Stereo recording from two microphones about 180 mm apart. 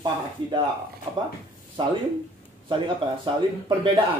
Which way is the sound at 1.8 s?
25° right (ahead or behind).